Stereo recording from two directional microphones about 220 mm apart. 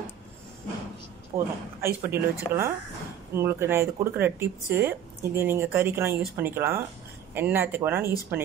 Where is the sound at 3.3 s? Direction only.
10° right (ahead or behind).